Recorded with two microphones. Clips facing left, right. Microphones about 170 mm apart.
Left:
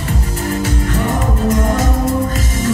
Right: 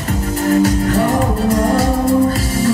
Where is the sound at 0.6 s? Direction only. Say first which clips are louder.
Right 6 dB; 40° right (ahead or behind).